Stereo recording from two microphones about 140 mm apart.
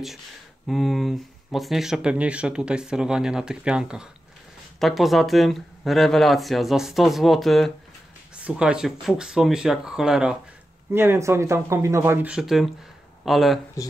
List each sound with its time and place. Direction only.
0.7 s speech: centre (ahead or behind)
10.9 s speech: 15° right (ahead or behind); by 13.6 s centre (ahead or behind)